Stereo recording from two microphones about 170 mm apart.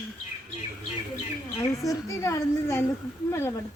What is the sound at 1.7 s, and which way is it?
A woman's voice, 20° left (ahead or behind).